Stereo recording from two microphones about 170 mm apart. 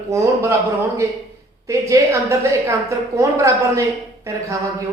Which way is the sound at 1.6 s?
20° right (ahead or behind).